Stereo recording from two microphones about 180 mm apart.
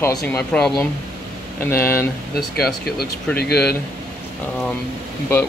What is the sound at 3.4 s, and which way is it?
Speech, 60° left (ahead or behind).